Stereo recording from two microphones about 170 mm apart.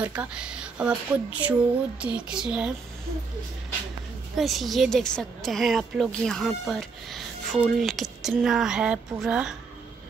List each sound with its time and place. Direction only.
0.0 s a woman's voice: 10° right (ahead or behind)
4.4 s a woman's voice: centre (ahead or behind)